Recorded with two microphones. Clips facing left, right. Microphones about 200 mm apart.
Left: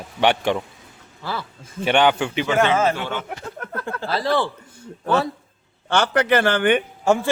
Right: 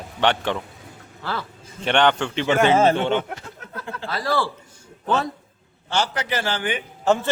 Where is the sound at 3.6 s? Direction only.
55° left (ahead or behind).